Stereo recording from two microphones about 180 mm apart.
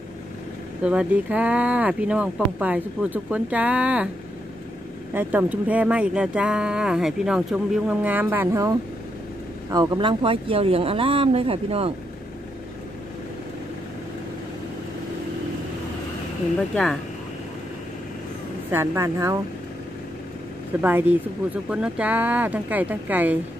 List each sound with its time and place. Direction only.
0.8 s speech: 5° right (ahead or behind)
5.1 s speech: 10° right (ahead or behind); by 11.9 s 30° right (ahead or behind)
16.7 s speech: 5° left (ahead or behind)
18.7 s speech: 15° right (ahead or behind)
21.6 s speech: 5° right (ahead or behind)